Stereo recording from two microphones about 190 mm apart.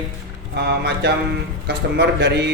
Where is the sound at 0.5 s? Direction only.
60° right (ahead or behind).